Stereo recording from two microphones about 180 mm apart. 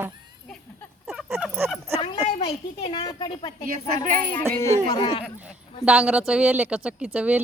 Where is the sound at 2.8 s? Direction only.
25° left (ahead or behind).